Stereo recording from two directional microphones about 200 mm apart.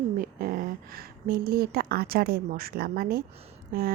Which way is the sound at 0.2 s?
45° right (ahead or behind).